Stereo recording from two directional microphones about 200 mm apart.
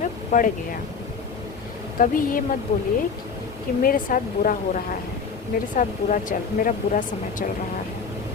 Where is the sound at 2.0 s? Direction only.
45° left (ahead or behind).